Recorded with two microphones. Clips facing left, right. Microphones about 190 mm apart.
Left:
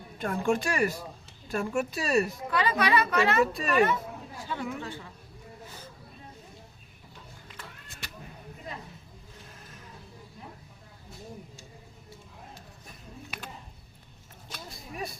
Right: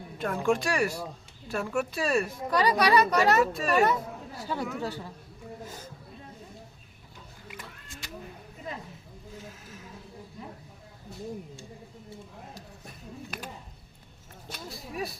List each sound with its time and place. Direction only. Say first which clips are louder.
0.2 s speech: right 1 dB; centre (ahead or behind)
2.5 s speech: right 6 dB; 40° right (ahead or behind)
3.4 s speech: even; centre (ahead or behind)
3.7 s speech: right 1 dB; 40° right (ahead or behind)
7.4 s a sound: right 4 dB; 10° right (ahead or behind)
14.7 s a sound: right 3 dB; centre (ahead or behind)